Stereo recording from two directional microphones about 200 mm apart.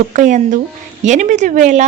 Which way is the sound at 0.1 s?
40° right (ahead or behind).